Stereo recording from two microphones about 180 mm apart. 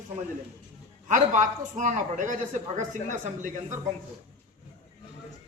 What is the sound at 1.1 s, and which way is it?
A man's voice, 45° right (ahead or behind).